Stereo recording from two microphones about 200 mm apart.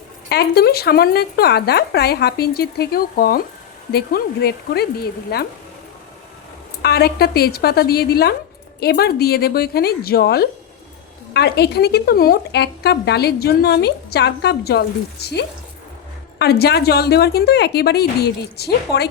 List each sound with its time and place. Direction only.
0.3 s speech: 50° left (ahead or behind)
6.8 s speech: 55° left (ahead or behind)